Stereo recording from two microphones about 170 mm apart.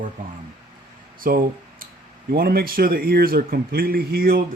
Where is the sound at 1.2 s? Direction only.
55° right (ahead or behind).